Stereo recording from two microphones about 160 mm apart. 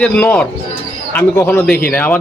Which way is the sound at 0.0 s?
10° left (ahead or behind).